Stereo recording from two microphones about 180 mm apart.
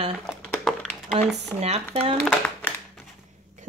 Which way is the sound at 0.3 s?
Centre (ahead or behind).